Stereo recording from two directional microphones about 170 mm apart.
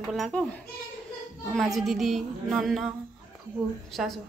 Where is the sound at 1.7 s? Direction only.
Centre (ahead or behind).